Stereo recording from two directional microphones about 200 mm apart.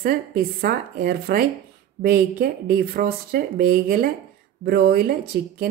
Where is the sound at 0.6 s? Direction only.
45° right (ahead or behind).